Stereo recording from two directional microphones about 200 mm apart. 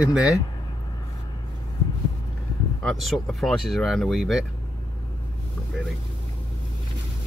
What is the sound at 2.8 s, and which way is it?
Speech, centre (ahead or behind).